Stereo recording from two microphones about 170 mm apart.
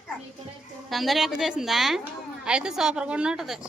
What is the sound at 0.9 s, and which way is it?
A woman's voice, centre (ahead or behind).